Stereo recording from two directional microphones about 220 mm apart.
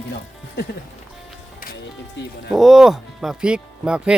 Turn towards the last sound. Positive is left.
turn(degrees=-5)  # may be behind; listen again after turning